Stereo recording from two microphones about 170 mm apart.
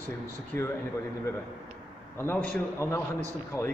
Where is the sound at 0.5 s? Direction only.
15° left (ahead or behind).